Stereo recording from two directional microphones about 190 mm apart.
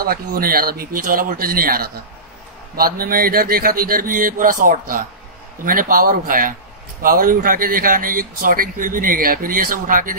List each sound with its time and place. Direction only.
0.0 s speech: 50° right (ahead or behind)